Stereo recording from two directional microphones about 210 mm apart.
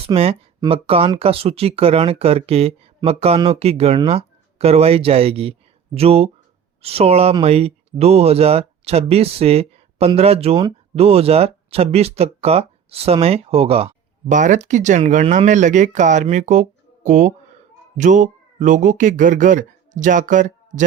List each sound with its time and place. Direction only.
0.0 s speech: 30° right (ahead or behind)